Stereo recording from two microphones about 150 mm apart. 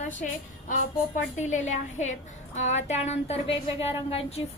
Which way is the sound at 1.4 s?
55° left (ahead or behind).